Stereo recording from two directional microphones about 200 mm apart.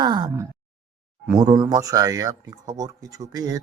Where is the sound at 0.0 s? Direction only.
20° right (ahead or behind).